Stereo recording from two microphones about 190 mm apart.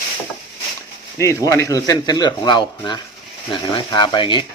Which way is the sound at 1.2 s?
15° left (ahead or behind).